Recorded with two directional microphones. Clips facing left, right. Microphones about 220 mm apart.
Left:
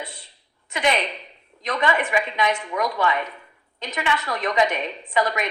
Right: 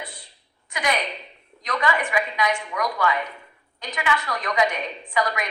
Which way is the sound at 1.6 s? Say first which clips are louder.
Left 2 dB; 25° left (ahead or behind).